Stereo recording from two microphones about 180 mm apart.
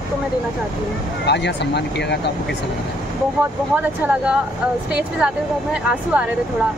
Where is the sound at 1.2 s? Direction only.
70° left (ahead or behind).